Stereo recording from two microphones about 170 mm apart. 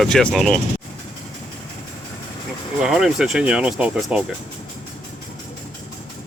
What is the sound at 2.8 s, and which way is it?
Speech, centre (ahead or behind).